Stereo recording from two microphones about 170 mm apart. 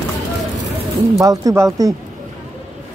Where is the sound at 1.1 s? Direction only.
20° right (ahead or behind).